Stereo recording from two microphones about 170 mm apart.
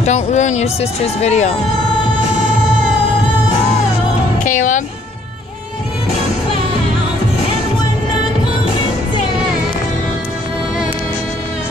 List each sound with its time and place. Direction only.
0.0 s speech: 45° left (ahead or behind)
4.5 s speech: 50° left (ahead or behind)